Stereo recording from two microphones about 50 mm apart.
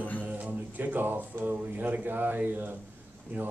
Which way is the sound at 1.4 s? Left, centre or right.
Right.